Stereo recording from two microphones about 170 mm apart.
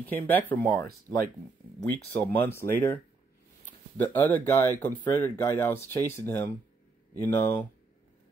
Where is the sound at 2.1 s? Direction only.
10° left (ahead or behind).